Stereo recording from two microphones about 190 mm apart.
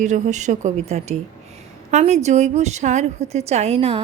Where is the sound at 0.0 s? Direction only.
40° right (ahead or behind).